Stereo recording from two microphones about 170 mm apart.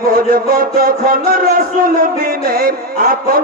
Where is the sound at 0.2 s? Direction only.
60° right (ahead or behind).